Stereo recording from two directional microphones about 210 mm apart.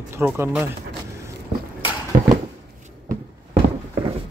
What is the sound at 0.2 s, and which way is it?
Speech, 5° right (ahead or behind).